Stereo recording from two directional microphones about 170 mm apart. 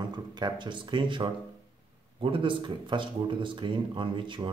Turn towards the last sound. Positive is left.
turn(degrees=-30)  # may be behind; listen again after turning